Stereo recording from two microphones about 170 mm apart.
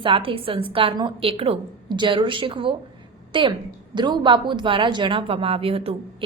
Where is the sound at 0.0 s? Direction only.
30° right (ahead or behind).